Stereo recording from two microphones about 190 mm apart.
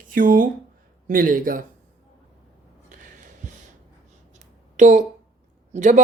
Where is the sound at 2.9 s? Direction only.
40° right (ahead or behind).